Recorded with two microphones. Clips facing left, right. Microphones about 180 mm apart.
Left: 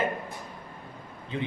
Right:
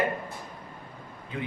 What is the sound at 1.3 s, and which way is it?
Speech, 25° left (ahead or behind).